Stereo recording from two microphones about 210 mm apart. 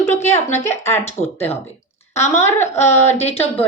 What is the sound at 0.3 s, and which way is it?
Speech, 10° left (ahead or behind).